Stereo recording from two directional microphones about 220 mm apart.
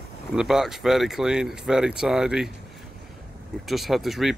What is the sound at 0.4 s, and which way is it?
Speech, centre (ahead or behind).